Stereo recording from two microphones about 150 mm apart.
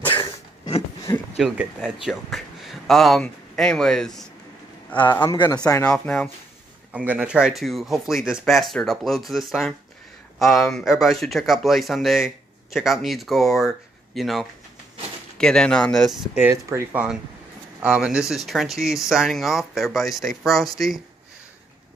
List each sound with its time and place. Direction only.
0.2 s a sound: 40° left (ahead or behind)
1.1 s speech: 15° left (ahead or behind)
1.4 s speech: 5° right (ahead or behind)
5.1 s speech: 30° left (ahead or behind)
5.9 s speech: 10° left (ahead or behind)
6.9 s speech: 10° right (ahead or behind)
16.4 s speech: 15° right (ahead or behind)